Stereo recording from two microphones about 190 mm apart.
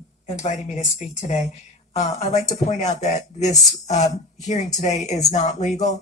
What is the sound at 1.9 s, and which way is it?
Speech, 35° left (ahead or behind).